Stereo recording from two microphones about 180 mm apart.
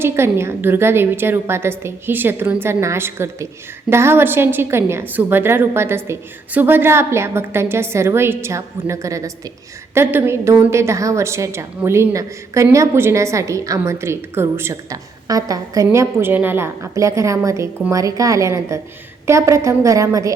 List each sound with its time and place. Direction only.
0.0 s a woman's voice: 15° right (ahead or behind)